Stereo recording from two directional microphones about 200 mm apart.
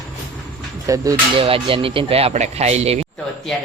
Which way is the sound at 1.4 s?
25° right (ahead or behind).